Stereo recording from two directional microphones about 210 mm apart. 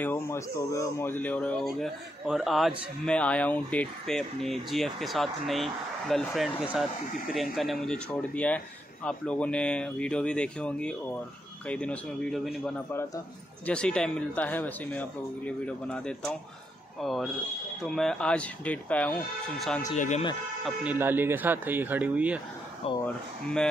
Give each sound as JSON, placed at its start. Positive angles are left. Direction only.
{"t": 0.0, "sound": "speech", "side_deg": 10}
{"t": 20.0, "sound": "speech", "side_deg": 35}
{"t": 20.6, "sound": "speech", "side_deg": -5}
{"t": 22.8, "sound": "speech", "side_deg": 30}